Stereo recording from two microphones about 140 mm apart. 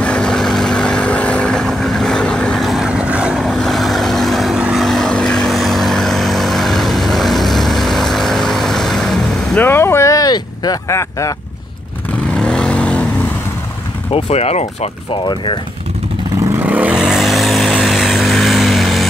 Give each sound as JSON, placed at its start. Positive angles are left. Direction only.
{"t": 0.0, "sound": "vehicle", "side_deg": 5}
{"t": 9.7, "sound": "a sound", "side_deg": 15}
{"t": 12.4, "sound": "vehicle", "side_deg": 5}
{"t": 14.1, "sound": "speech", "side_deg": 50}
{"t": 15.1, "sound": "speech", "side_deg": 35}
{"t": 16.5, "sound": "vehicle", "side_deg": -10}